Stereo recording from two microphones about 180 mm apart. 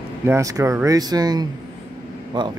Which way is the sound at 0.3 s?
20° right (ahead or behind).